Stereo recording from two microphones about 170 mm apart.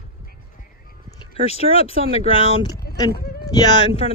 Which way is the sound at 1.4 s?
35° left (ahead or behind).